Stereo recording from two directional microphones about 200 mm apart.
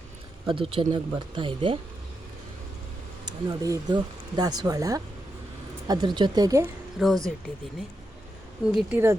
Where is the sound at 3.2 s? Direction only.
20° right (ahead or behind).